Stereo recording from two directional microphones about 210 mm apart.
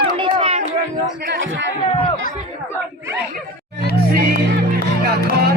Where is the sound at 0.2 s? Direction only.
25° right (ahead or behind).